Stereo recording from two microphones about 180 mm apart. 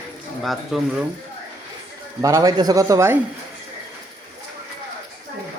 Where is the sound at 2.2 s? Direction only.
20° right (ahead or behind).